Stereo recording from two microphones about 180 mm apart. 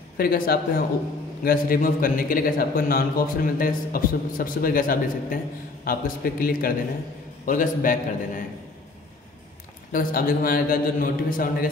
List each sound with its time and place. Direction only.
0.2 s a man's voice: 55° left (ahead or behind)
9.9 s a man's voice: 55° left (ahead or behind)